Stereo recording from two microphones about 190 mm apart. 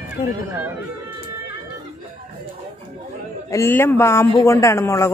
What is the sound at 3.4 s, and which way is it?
A man's voice, 15° left (ahead or behind).